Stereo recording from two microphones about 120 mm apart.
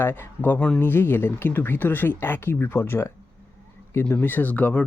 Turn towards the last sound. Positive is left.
turn(degrees=15)  # may be behind; listen again after turning